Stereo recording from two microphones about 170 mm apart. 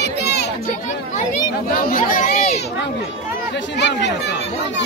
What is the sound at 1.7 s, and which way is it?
Speech, 60° left (ahead or behind).